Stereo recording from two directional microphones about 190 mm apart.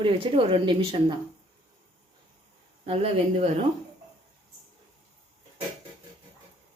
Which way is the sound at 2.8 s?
30° right (ahead or behind).